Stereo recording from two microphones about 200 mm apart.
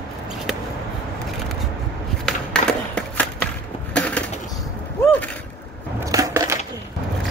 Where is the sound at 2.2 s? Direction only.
5° left (ahead or behind).